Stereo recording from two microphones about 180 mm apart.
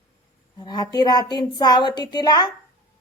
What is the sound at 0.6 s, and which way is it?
A woman's voice, 20° left (ahead or behind).